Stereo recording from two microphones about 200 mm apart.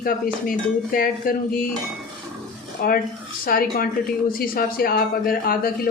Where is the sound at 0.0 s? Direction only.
45° left (ahead or behind).